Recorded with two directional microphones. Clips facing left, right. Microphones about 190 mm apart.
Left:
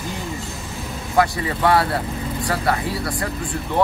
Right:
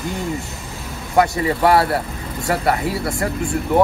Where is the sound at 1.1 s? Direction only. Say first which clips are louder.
Right 3 dB; 25° right (ahead or behind).